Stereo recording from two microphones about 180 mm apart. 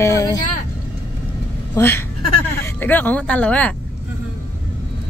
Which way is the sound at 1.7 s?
15° left (ahead or behind).